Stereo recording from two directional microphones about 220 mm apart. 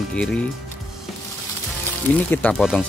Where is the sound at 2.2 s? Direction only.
5° left (ahead or behind).